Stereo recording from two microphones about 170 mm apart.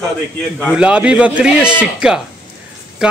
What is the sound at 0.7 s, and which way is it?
A man's voice, 5° right (ahead or behind).